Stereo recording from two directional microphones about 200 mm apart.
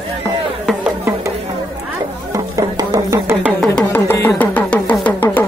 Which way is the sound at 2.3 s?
20° right (ahead or behind).